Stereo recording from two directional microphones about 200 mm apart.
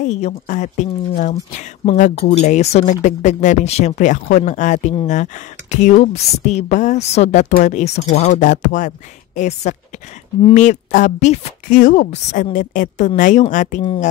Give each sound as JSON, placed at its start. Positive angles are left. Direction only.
{"t": 0.0, "sound": "speech", "side_deg": 35}